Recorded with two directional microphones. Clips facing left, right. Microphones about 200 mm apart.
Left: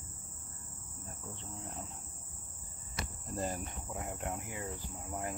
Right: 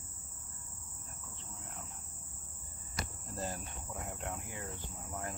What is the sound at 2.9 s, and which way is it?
Insect, 20° left (ahead or behind).